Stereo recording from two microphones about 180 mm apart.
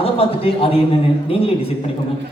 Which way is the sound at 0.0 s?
30° left (ahead or behind).